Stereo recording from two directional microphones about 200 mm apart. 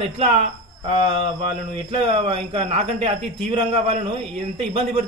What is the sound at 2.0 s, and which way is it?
Speech, 25° right (ahead or behind).